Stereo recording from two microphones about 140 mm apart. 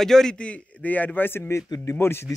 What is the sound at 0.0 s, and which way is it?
A man's voice, 5° left (ahead or behind).